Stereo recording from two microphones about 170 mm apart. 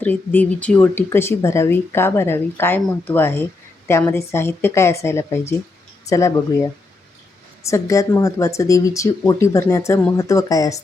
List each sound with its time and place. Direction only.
0.0 s speech: 10° left (ahead or behind)
7.7 s speech: 20° left (ahead or behind)